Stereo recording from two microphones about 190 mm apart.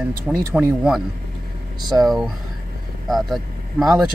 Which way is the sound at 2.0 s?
Centre (ahead or behind).